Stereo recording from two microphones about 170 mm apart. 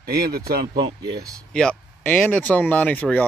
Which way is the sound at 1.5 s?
5° left (ahead or behind).